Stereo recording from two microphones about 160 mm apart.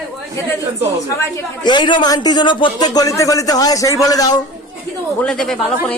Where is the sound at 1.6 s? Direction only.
30° left (ahead or behind).